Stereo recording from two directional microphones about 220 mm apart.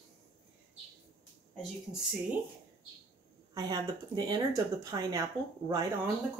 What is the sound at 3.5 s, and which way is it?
Speech, 15° right (ahead or behind).